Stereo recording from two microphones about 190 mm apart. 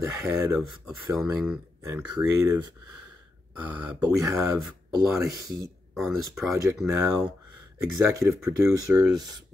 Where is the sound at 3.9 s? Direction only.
15° right (ahead or behind).